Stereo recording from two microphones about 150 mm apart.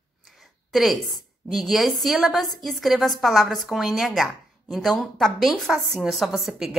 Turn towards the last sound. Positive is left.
turn(degrees=0)  # may be behind; listen again after turning